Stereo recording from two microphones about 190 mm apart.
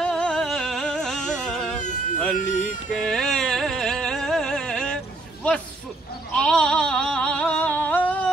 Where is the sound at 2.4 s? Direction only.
40° left (ahead or behind).